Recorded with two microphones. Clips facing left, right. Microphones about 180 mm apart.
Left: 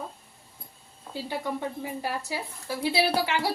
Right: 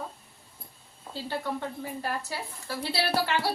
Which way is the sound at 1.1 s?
15° left (ahead or behind).